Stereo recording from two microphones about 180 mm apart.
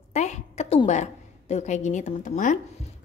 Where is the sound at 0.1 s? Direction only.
40° left (ahead or behind).